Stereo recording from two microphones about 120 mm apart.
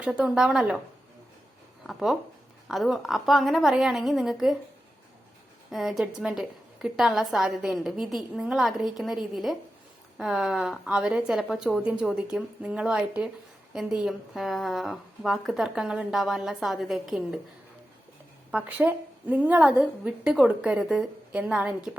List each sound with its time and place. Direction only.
0.0 s a woman's voice: 5° right (ahead or behind)
1.9 s a woman's voice: centre (ahead or behind)
5.7 s a woman's voice: centre (ahead or behind)
18.5 s a woman's voice: 10° right (ahead or behind)